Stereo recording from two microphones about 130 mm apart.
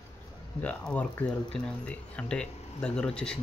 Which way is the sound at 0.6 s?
10° left (ahead or behind).